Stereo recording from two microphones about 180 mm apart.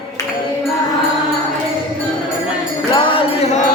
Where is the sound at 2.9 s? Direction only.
30° left (ahead or behind).